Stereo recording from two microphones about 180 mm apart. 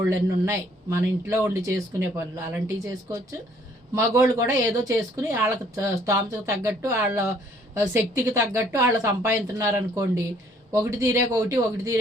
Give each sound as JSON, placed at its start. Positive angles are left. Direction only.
{"t": 0.1, "sound": "speech", "side_deg": -15}